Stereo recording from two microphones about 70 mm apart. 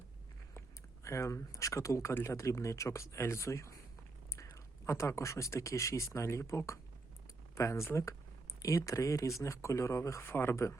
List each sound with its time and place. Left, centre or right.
1.0 s speech: left
10.2 s speech: left